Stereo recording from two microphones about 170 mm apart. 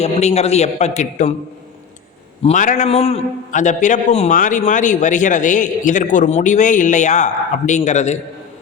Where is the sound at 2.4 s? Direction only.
45° left (ahead or behind).